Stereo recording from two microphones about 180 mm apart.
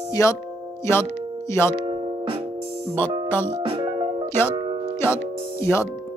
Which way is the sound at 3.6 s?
30° right (ahead or behind).